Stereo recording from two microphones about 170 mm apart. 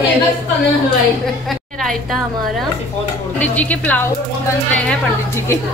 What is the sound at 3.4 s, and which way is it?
Speech, 10° left (ahead or behind).